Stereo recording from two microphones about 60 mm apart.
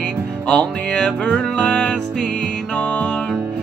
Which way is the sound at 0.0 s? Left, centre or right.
Centre.